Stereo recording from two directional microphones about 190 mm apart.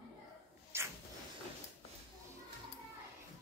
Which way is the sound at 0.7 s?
15° right (ahead or behind).